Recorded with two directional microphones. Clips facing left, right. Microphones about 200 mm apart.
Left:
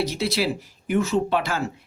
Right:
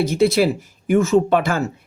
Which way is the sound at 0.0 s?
50° right (ahead or behind).